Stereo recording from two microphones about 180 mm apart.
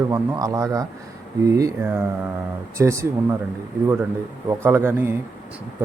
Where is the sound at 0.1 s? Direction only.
20° right (ahead or behind).